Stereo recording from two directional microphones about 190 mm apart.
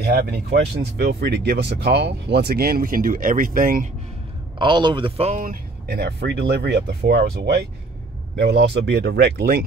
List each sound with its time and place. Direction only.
0.0 s speech: 55° right (ahead or behind)
4.6 s speech: 25° right (ahead or behind)
5.4 s speech: 50° right (ahead or behind)